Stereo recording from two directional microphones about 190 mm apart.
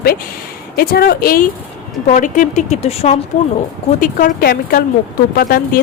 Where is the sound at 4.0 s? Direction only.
45° left (ahead or behind).